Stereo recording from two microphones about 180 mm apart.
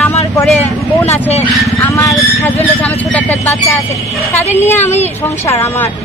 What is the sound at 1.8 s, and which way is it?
Speech, 15° left (ahead or behind).